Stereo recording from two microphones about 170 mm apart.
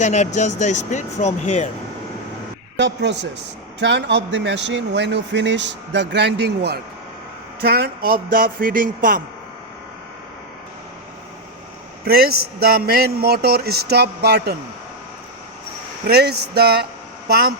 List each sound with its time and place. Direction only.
0.0 s speech: 45° left (ahead or behind)
2.7 s speech: 90° right
7.6 s a man's voice: 65° right (ahead or behind)
12.0 s a man's voice: 65° right (ahead or behind)
16.0 s speech: 70° right (ahead or behind)